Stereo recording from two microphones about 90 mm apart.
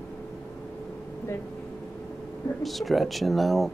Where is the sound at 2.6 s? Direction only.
Centre (ahead or behind).